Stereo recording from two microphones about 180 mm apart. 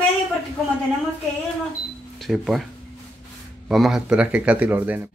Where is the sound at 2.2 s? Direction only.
Centre (ahead or behind).